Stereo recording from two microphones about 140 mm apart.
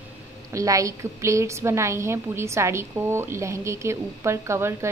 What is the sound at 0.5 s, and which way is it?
A woman's voice, 25° right (ahead or behind).